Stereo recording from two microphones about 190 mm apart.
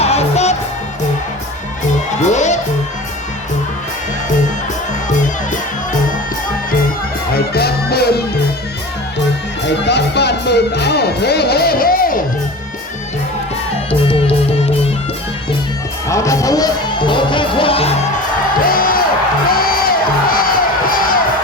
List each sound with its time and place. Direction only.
0.0 s music: 35° left (ahead or behind)
2.2 s music: 40° left (ahead or behind)
5.0 s music: 40° left (ahead or behind)
7.3 s music: 55° left (ahead or behind)
9.6 s music: 65° left (ahead or behind)
16.0 s speech: 15° left (ahead or behind)
18.6 s music: 50° left (ahead or behind)